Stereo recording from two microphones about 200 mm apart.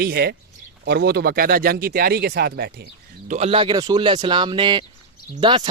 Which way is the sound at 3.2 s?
35° right (ahead or behind).